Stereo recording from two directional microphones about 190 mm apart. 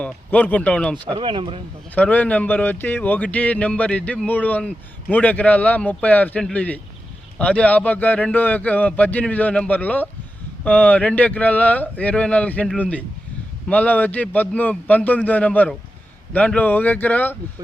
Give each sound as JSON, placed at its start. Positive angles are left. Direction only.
{"t": 0.0, "sound": "speech", "side_deg": 10}
{"t": 1.1, "sound": "speech", "side_deg": -25}
{"t": 2.0, "sound": "speech", "side_deg": 10}